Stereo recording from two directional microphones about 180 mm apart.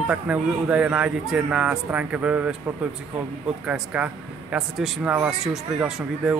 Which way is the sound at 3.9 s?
5° right (ahead or behind).